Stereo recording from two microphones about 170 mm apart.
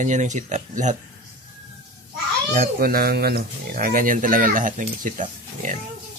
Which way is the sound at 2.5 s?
60° right (ahead or behind).